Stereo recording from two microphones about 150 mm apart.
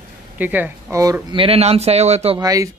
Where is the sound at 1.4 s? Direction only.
40° right (ahead or behind).